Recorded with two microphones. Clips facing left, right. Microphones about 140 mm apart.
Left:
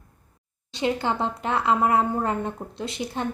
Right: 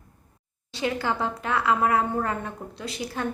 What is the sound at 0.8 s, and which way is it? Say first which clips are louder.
A woman's voice: left 2 dB; 20° left (ahead or behind).